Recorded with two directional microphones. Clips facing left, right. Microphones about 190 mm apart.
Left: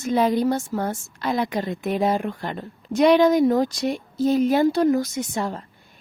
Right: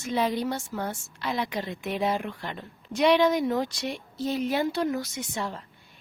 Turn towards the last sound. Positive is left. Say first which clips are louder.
# left 6 dB
turn(degrees=45)  # may be behind; listen again after turning